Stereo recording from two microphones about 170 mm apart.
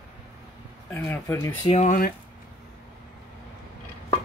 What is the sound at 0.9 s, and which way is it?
Speech, 15° left (ahead or behind).